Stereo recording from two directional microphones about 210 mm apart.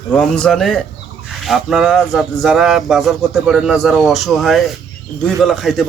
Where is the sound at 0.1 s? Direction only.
Centre (ahead or behind).